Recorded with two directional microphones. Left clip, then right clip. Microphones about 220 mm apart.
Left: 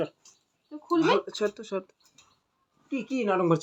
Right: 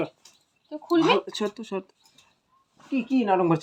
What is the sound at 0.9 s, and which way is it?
Speech, 35° right (ahead or behind).